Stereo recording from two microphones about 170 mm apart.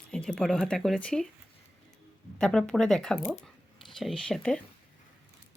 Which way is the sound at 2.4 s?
5° left (ahead or behind).